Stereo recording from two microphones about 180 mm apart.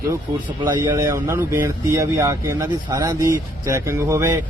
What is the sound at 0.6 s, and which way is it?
Speech, 15° right (ahead or behind).